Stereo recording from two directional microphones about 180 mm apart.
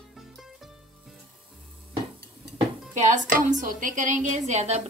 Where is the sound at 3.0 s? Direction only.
45° right (ahead or behind).